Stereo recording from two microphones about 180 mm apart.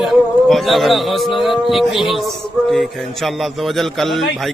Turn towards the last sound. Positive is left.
turn(degrees=0)  # may be behind; listen again after turning